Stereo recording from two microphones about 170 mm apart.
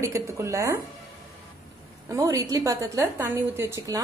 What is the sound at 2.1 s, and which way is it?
A woman's voice, 20° right (ahead or behind).